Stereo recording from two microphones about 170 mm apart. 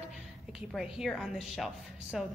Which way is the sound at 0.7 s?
Centre (ahead or behind).